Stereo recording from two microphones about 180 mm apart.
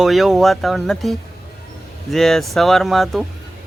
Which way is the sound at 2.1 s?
Centre (ahead or behind).